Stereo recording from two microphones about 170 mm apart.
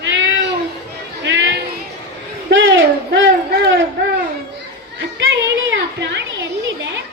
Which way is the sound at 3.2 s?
90° right.